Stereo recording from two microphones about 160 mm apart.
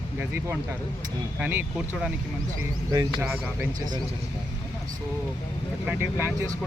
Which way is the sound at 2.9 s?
25° right (ahead or behind).